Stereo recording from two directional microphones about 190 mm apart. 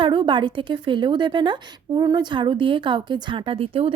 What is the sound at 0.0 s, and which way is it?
Speech, 25° right (ahead or behind).